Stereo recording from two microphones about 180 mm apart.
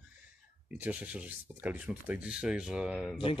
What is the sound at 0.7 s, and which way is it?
Speech, 10° right (ahead or behind).